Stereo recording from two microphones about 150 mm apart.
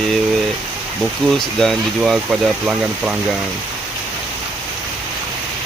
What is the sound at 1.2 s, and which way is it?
Speech, 5° left (ahead or behind).